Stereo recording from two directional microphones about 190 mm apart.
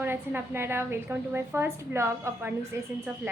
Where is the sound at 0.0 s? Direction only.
10° right (ahead or behind).